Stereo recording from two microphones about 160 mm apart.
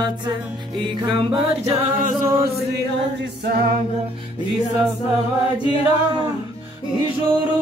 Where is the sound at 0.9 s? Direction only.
30° right (ahead or behind).